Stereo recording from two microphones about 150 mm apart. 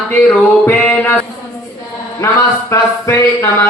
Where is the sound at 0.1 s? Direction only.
10° left (ahead or behind).